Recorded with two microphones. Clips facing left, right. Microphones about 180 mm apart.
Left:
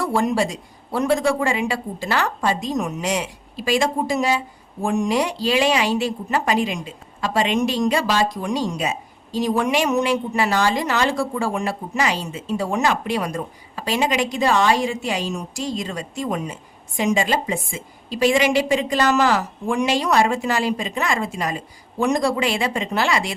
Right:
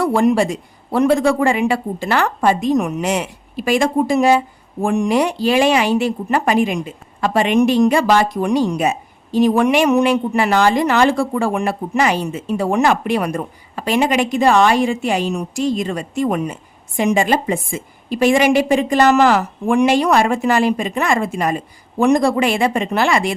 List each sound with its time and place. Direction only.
0.0 s a woman's voice: 55° right (ahead or behind)